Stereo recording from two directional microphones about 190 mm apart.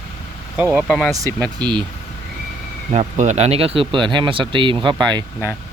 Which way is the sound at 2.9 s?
35° right (ahead or behind).